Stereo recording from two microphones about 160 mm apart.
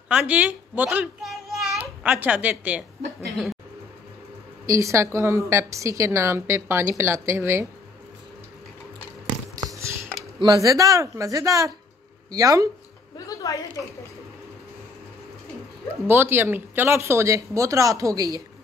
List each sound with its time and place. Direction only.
0.1 s a child's voice: 10° right (ahead or behind)
4.6 s a woman's voice: 20° right (ahead or behind)
9.6 s a sound: 20° right (ahead or behind)
10.4 s speech: 25° right (ahead or behind)
13.3 s a sound: 25° left (ahead or behind)
16.1 s a woman's voice: 15° right (ahead or behind)